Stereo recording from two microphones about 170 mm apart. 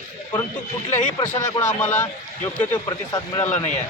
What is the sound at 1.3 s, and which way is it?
Speech, 45° left (ahead or behind).